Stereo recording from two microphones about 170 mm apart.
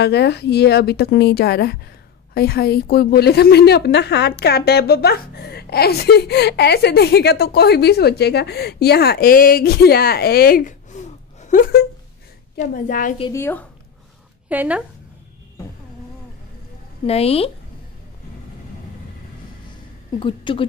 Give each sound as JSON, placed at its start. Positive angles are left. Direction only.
{"t": 0.0, "sound": "a woman's voice", "side_deg": 80}
{"t": 13.3, "sound": "speech", "side_deg": 10}
{"t": 14.5, "sound": "speech", "side_deg": -10}
{"t": 17.0, "sound": "a woman's voice", "side_deg": 35}
{"t": 20.2, "sound": "a woman's voice", "side_deg": 30}